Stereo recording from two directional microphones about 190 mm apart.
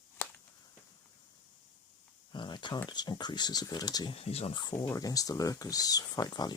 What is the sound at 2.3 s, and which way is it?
Speech, 25° left (ahead or behind).